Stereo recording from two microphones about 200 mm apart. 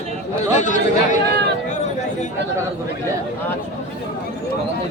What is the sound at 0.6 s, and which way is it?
Speech, 40° left (ahead or behind).